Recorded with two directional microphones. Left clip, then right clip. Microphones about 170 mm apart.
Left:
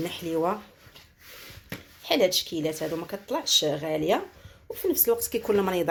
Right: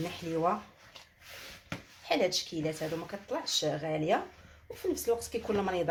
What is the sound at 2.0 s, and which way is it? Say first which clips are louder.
Speech: left 6 dB; 40° left (ahead or behind).